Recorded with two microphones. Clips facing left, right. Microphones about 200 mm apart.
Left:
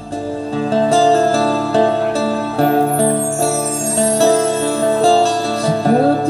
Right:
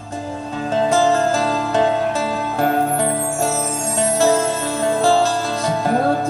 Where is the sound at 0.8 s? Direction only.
35° left (ahead or behind).